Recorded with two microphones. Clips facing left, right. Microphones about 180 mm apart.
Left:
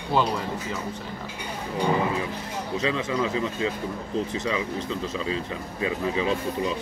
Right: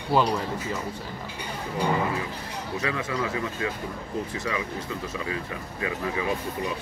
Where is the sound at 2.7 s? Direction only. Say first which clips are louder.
Left 3 dB; 20° left (ahead or behind).